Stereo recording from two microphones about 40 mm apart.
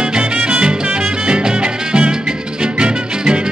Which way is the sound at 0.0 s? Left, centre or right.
Right.